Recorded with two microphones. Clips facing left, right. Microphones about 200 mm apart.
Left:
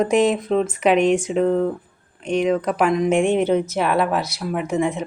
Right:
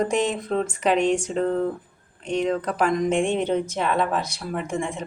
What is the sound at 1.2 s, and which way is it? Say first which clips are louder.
A woman's voice: left 4 dB; 10° left (ahead or behind).